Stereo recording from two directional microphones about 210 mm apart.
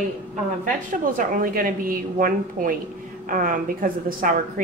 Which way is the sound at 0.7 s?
40° right (ahead or behind).